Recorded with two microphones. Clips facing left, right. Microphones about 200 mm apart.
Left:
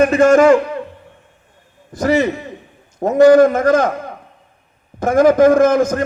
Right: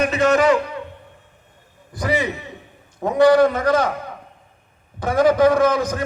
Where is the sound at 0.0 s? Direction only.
50° left (ahead or behind).